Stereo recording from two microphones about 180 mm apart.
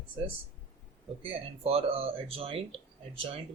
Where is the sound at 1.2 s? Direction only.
35° right (ahead or behind).